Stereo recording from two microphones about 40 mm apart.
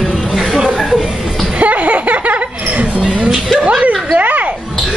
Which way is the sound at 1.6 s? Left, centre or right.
Right.